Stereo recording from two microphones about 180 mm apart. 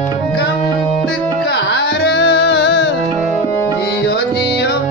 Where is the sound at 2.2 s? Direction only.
65° left (ahead or behind).